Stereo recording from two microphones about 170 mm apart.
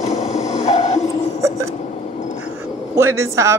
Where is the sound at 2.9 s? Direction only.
15° right (ahead or behind).